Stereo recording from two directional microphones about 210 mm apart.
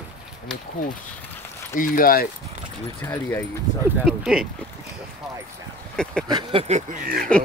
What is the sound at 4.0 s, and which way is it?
Speech, centre (ahead or behind).